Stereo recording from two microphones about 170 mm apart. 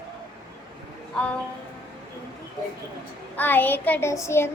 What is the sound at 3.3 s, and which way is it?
Child singing, 10° left (ahead or behind).